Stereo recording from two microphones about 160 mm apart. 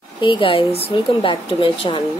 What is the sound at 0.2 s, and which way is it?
A woman's voice, 30° left (ahead or behind).